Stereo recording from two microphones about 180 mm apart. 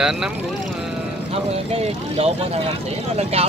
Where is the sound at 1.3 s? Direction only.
35° right (ahead or behind).